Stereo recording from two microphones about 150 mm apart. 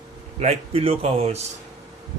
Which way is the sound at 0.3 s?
45° right (ahead or behind).